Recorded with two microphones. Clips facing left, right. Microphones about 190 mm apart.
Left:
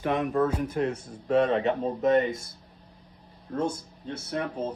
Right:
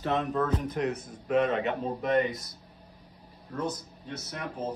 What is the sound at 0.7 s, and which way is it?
Speech, 30° left (ahead or behind).